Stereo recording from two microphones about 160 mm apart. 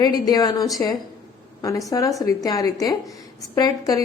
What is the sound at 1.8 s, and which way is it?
A woman's voice, 20° left (ahead or behind).